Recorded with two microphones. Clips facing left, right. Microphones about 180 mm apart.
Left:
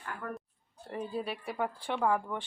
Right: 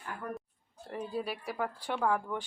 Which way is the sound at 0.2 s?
15° right (ahead or behind).